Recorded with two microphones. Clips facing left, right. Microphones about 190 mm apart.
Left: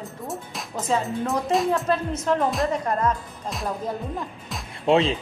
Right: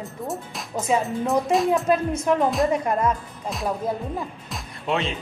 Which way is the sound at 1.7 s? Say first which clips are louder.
Right 3 dB; 15° right (ahead or behind).